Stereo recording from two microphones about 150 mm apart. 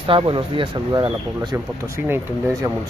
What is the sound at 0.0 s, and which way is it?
Speech, 35° right (ahead or behind).